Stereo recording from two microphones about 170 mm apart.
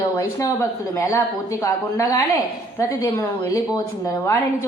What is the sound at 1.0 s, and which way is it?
A woman's voice, 20° left (ahead or behind).